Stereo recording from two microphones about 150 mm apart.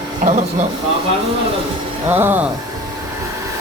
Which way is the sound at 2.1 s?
15° right (ahead or behind).